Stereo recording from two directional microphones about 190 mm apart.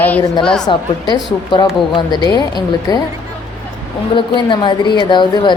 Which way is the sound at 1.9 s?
20° left (ahead or behind).